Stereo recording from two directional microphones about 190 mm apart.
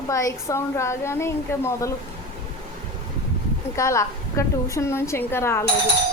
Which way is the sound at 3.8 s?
15° left (ahead or behind).